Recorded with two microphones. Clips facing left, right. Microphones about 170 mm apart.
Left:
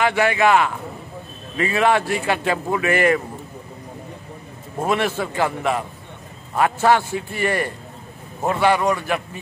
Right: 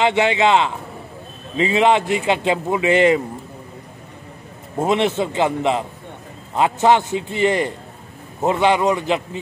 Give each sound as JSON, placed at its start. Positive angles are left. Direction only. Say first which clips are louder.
{"t": 0.0, "sound": "speech", "louder": "right 1 dB", "side_deg": -20}
{"t": 4.7, "sound": "speech", "louder": "right 3 dB", "side_deg": -20}